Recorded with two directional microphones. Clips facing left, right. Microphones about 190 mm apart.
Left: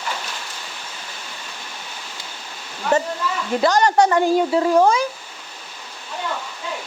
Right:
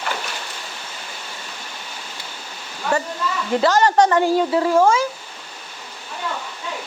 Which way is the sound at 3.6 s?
15° left (ahead or behind).